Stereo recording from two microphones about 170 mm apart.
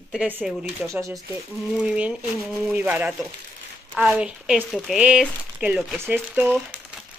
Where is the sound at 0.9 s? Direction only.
20° right (ahead or behind).